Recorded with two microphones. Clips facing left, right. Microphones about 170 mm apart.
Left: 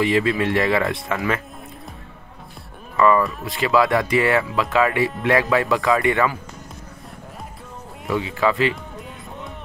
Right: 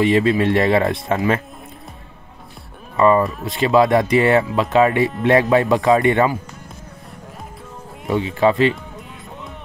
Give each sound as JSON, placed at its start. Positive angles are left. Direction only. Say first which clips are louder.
{"t": 0.0, "sound": "speech", "louder": "right 4 dB", "side_deg": -20}
{"t": 3.0, "sound": "speech", "louder": "right 2 dB", "side_deg": -25}
{"t": 8.1, "sound": "speech", "louder": "right 4 dB", "side_deg": -25}